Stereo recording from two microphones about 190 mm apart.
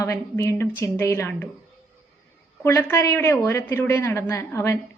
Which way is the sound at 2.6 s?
15° left (ahead or behind).